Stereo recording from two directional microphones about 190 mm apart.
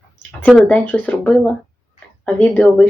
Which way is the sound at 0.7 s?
5° left (ahead or behind).